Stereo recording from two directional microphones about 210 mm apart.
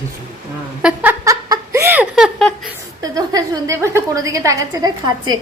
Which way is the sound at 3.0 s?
15° right (ahead or behind).